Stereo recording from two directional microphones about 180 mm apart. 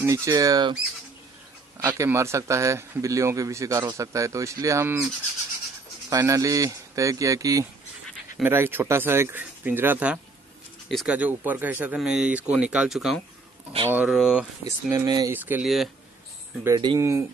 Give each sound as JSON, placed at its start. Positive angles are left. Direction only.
{"t": 0.0, "sound": "speech", "side_deg": -15}
{"t": 1.9, "sound": "speech", "side_deg": -15}
{"t": 14.9, "sound": "speech", "side_deg": -20}
{"t": 15.6, "sound": "speech", "side_deg": 0}
{"t": 16.6, "sound": "speech", "side_deg": -20}